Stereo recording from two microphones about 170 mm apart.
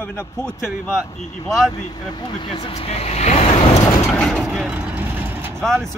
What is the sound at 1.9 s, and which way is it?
Speech, 25° left (ahead or behind).